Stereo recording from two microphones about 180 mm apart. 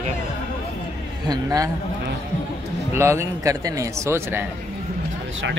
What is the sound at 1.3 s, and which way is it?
Speech, 20° right (ahead or behind).